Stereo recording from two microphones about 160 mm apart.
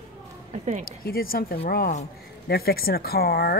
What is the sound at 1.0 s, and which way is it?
A woman's voice, 65° left (ahead or behind).